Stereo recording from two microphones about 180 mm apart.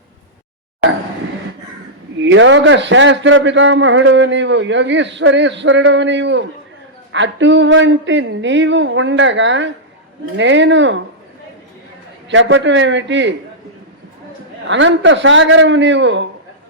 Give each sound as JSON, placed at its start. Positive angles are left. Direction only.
{"t": 2.2, "sound": "a man's voice", "side_deg": -90}
{"t": 12.3, "sound": "a man's voice", "side_deg": -90}
{"t": 14.7, "sound": "a man's voice", "side_deg": -90}